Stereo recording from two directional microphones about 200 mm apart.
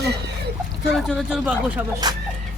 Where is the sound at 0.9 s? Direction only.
Centre (ahead or behind).